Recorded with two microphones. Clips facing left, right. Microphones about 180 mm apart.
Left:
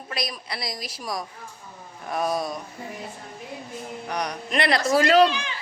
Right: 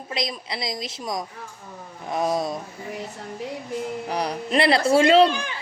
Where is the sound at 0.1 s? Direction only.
20° right (ahead or behind).